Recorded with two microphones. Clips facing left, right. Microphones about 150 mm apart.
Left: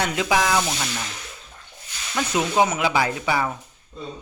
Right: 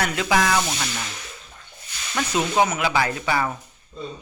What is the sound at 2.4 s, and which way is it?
Speech, 10° left (ahead or behind).